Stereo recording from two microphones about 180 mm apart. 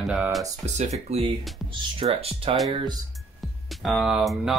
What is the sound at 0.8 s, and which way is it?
Speech, 35° right (ahead or behind).